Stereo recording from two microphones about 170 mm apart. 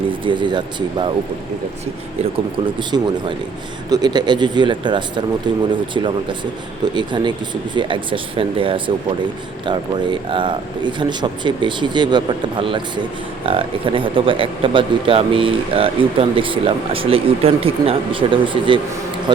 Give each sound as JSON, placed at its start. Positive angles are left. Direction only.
{"t": 0.1, "sound": "speech", "side_deg": -30}
{"t": 2.7, "sound": "speech", "side_deg": -25}